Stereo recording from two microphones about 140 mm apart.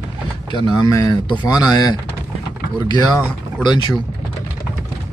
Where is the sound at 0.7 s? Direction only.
25° left (ahead or behind).